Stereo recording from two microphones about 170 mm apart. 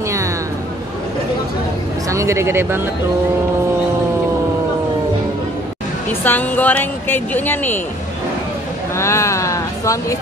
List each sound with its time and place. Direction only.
2.0 s speech: 15° right (ahead or behind)
6.2 s speech: 10° left (ahead or behind)
8.9 s speech: 15° left (ahead or behind)